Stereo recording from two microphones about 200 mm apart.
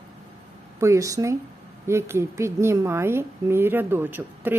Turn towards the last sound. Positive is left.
turn(degrees=-10)  # may be behind; listen again after turning